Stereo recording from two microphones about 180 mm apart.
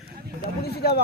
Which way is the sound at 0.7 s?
60° left (ahead or behind).